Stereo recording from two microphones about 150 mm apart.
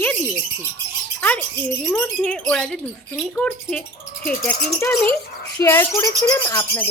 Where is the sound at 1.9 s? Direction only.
5° left (ahead or behind).